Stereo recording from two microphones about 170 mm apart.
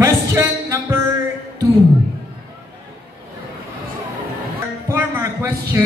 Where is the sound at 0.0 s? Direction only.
15° right (ahead or behind).